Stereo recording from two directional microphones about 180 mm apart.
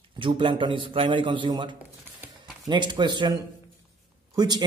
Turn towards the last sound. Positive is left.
turn(degrees=-25)  # may be behind; listen again after turning